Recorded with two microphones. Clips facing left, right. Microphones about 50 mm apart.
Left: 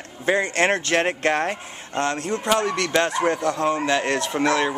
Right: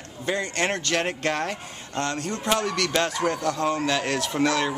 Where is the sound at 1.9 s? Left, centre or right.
Centre.